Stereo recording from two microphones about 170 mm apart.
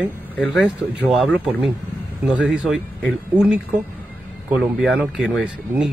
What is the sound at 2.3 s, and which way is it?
Speech, 5° right (ahead or behind).